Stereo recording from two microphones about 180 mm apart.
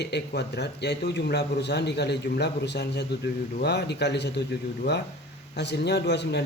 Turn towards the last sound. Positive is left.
turn(degrees=70)  # may be behind; listen again after turning